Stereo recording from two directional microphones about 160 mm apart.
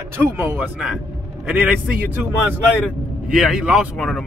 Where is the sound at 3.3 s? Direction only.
5° right (ahead or behind).